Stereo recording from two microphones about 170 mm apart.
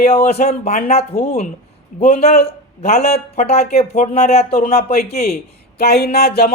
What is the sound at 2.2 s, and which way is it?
Speech, 35° left (ahead or behind).